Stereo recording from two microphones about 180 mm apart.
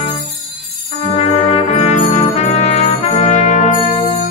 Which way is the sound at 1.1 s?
35° left (ahead or behind).